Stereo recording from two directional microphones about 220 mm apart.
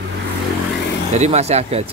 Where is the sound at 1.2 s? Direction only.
30° right (ahead or behind).